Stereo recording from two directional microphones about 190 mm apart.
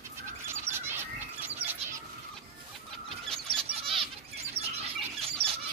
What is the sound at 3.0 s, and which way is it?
Bird, 5° left (ahead or behind).